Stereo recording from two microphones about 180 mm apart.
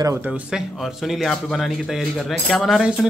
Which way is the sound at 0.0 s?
15° right (ahead or behind).